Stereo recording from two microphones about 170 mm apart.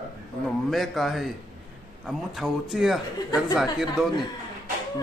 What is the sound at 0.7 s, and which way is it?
Speech, centre (ahead or behind).